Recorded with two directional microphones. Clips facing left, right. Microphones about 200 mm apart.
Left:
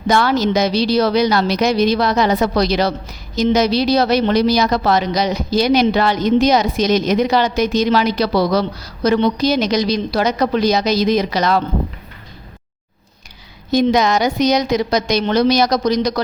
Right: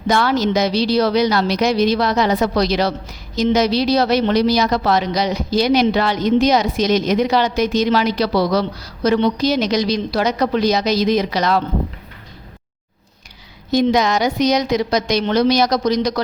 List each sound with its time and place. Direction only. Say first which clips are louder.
0.1 s a woman's voice: left 1 dB; 45° left (ahead or behind)
13.7 s a woman's voice: left 1 dB; 50° left (ahead or behind)